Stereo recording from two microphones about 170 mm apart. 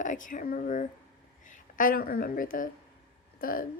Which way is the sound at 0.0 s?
50° left (ahead or behind).